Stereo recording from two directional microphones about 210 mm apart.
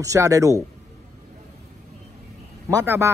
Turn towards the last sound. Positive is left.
turn(degrees=-15)  # may be behind; listen again after turning